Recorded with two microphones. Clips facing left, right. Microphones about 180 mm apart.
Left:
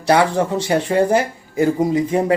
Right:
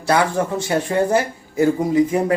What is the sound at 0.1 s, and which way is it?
Speech, 20° left (ahead or behind).